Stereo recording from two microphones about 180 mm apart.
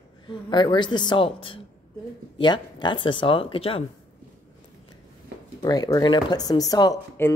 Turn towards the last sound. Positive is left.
turn(degrees=20)  # may be behind; listen again after turning